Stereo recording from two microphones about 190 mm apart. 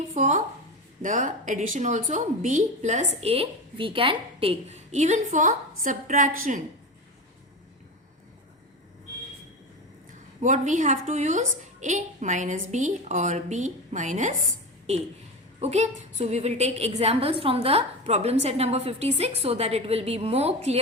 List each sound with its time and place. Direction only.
0.1 s a woman's voice: 40° right (ahead or behind)
10.4 s a woman's voice: 40° right (ahead or behind)
15.6 s a woman's voice: 35° right (ahead or behind)